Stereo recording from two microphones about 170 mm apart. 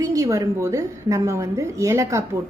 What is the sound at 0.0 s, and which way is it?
A woman's voice, 20° right (ahead or behind).